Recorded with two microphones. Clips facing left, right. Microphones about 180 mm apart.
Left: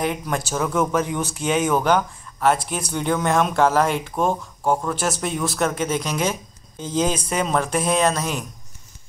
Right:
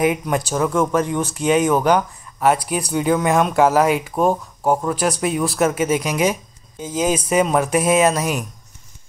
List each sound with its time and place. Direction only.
0.0 s speech: 5° right (ahead or behind)